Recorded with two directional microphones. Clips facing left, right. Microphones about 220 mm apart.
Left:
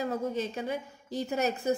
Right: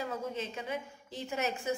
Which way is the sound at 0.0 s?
40° left (ahead or behind).